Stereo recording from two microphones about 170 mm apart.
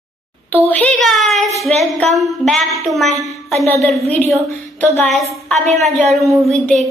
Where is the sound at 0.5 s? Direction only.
10° left (ahead or behind).